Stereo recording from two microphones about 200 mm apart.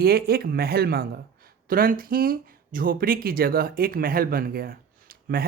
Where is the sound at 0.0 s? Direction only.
50° right (ahead or behind).